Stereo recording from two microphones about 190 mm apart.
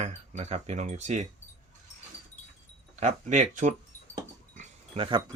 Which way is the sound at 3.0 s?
40° right (ahead or behind).